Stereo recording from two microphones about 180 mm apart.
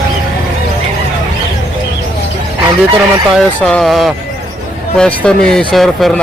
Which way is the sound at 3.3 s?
5° left (ahead or behind).